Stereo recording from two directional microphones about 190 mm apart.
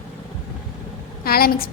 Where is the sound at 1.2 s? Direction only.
55° left (ahead or behind).